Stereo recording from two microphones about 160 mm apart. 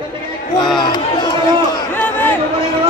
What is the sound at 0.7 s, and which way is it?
Chatter, 30° left (ahead or behind).